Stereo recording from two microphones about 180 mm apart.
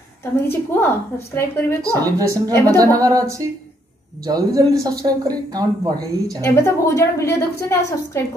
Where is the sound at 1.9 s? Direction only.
20° right (ahead or behind).